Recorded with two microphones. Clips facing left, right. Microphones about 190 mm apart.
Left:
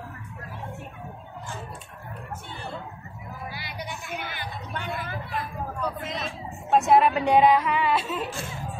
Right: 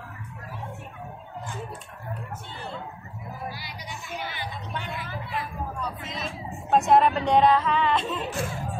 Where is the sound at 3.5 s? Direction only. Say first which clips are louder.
Left 3 dB; 60° left (ahead or behind).